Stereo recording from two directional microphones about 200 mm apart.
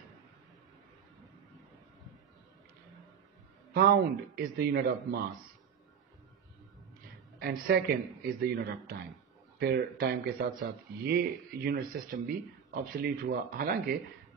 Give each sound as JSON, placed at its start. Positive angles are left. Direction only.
{"t": 3.7, "sound": "a man's voice", "side_deg": -55}
{"t": 7.3, "sound": "a man's voice", "side_deg": -50}